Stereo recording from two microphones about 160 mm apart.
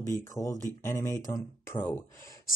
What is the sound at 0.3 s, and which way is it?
Speech, 20° left (ahead or behind).